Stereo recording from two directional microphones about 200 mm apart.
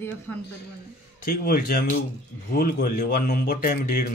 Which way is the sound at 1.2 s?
50° left (ahead or behind).